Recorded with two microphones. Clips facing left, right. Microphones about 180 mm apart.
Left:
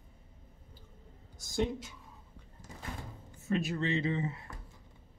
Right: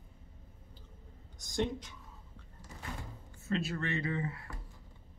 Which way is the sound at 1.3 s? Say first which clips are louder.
Left 1 dB; 5° left (ahead or behind).